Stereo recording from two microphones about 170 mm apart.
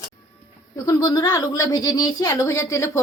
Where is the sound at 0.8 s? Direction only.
20° left (ahead or behind).